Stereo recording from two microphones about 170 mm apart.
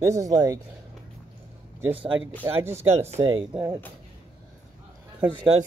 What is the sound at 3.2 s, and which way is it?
Speech, 25° right (ahead or behind).